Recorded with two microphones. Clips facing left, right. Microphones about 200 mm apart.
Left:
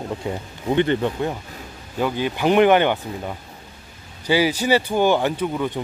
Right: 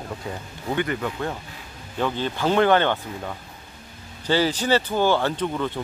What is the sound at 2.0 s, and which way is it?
Speech, 10° left (ahead or behind).